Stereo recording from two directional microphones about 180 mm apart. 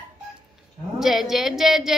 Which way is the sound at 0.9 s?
Centre (ahead or behind).